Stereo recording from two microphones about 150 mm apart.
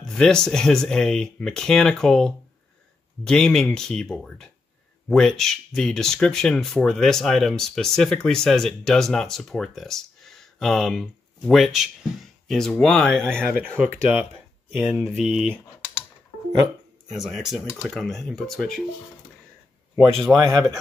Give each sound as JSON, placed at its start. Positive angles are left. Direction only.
{"t": 0.0, "sound": "speech", "side_deg": 5}
{"t": 14.7, "sound": "speech", "side_deg": -10}
{"t": 17.1, "sound": "speech", "side_deg": 0}
{"t": 20.3, "sound": "speech", "side_deg": -25}